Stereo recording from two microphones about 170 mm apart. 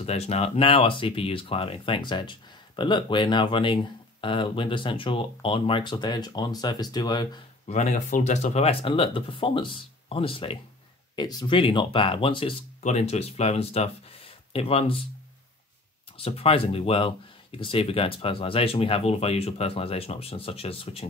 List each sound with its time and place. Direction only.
0.0 s speech: 40° left (ahead or behind)
7.6 s speech: 45° left (ahead or behind)
16.2 s speech: 35° left (ahead or behind)